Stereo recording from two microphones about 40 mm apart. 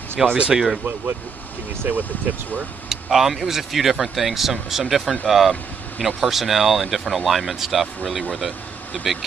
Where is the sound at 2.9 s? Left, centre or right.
Centre.